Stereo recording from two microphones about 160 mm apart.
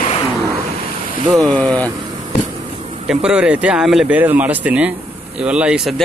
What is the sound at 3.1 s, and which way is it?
Speech, 5° right (ahead or behind).